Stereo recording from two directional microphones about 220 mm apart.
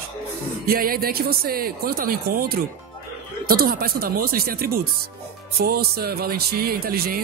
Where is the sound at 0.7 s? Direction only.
40° right (ahead or behind).